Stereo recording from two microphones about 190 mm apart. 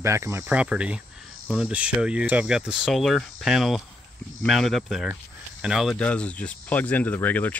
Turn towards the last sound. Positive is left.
turn(degrees=10)  # may be behind; listen again after turning